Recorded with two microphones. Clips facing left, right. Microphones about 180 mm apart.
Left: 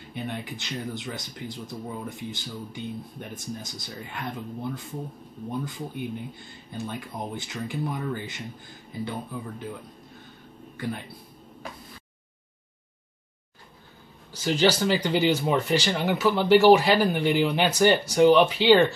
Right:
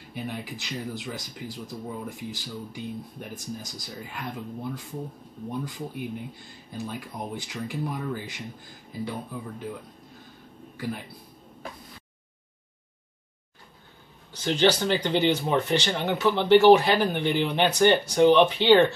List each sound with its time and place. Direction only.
0.1 s speech: 5° right (ahead or behind)
10.8 s speech: centre (ahead or behind)
14.3 s speech: 5° left (ahead or behind)